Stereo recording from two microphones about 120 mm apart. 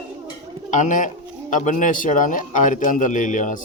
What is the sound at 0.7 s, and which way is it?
Speech, 90° left.